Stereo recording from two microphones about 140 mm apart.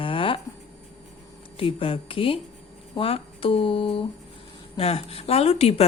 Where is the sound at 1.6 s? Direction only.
40° left (ahead or behind).